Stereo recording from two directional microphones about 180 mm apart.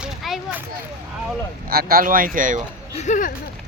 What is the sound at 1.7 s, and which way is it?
Speech, 55° right (ahead or behind).